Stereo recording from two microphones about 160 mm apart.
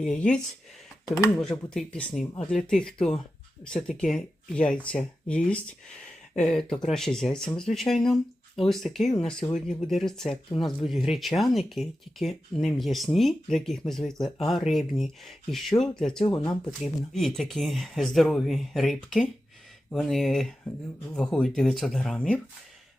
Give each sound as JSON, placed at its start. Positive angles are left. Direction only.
{"t": 0.0, "sound": "speech", "side_deg": 5}
{"t": 1.0, "sound": "speech", "side_deg": 20}
{"t": 1.4, "sound": "speech", "side_deg": 5}